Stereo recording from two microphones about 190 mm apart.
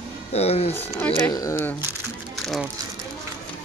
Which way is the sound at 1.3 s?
20° left (ahead or behind).